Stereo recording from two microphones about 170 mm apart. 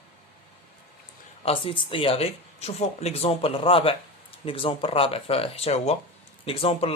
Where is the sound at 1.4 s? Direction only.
30° left (ahead or behind).